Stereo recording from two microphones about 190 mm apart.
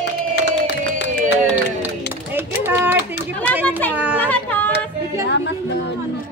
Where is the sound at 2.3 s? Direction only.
10° right (ahead or behind).